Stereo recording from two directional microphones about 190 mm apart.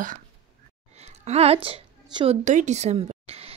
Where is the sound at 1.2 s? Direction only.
35° right (ahead or behind).